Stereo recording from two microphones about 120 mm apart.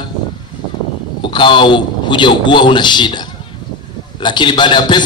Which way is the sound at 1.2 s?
40° left (ahead or behind).